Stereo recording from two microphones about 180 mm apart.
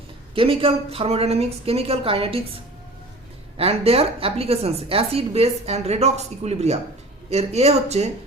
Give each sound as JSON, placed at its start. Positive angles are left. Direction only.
{"t": 0.3, "sound": "a woman's voice", "side_deg": -30}
{"t": 3.6, "sound": "a woman's voice", "side_deg": -35}